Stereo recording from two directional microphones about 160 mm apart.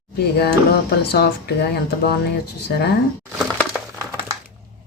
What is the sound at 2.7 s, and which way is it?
Speech, 90° left.